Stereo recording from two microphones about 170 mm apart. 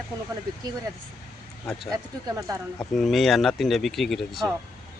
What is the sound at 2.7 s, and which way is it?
Speech, centre (ahead or behind).